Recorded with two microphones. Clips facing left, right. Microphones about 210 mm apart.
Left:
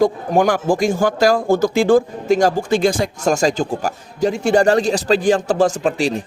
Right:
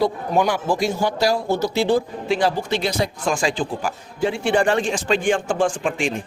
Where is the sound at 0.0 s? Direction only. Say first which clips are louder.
Left 4 dB; 50° left (ahead or behind).